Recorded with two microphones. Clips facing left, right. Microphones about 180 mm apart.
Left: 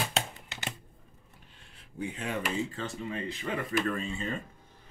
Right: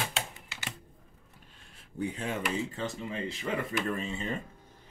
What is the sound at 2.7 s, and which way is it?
Speech, 20° right (ahead or behind).